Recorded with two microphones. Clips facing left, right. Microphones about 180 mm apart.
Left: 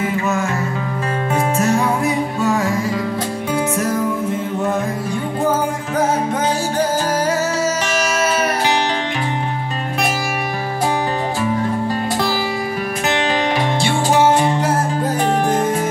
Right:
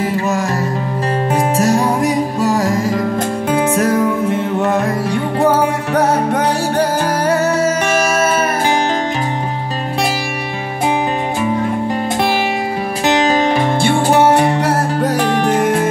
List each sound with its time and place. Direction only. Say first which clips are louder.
0.0 s music: right 2 dB; 35° right (ahead or behind)
3.5 s music: right 5 dB; 70° right (ahead or behind); by 8.7 s 50° right (ahead or behind)
13.0 s music: right 6 dB; 40° right (ahead or behind)
14.0 s music: right 2 dB; 60° right (ahead or behind)